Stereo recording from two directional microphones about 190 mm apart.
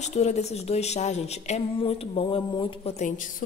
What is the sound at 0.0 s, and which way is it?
Speech, 35° left (ahead or behind).